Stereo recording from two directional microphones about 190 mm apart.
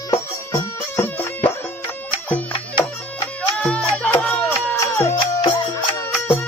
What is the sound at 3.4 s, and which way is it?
Music, 5° left (ahead or behind).